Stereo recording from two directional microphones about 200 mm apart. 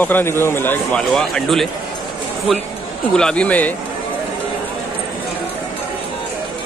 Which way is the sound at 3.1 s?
5° left (ahead or behind).